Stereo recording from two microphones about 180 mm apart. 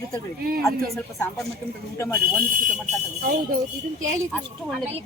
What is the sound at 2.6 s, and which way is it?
Speech, 45° right (ahead or behind).